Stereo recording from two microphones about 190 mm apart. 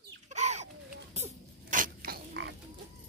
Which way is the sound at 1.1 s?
40° right (ahead or behind).